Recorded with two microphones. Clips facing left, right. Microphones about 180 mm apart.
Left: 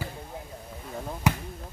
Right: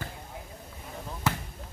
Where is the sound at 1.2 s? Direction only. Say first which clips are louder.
Left 4 dB; 15° left (ahead or behind).